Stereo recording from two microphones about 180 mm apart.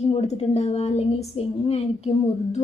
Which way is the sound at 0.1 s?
35° left (ahead or behind).